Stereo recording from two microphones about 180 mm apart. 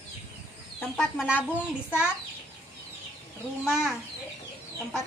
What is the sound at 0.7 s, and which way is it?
Speech, centre (ahead or behind).